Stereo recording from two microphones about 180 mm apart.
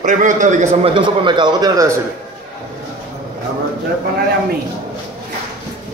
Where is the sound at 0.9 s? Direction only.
25° right (ahead or behind).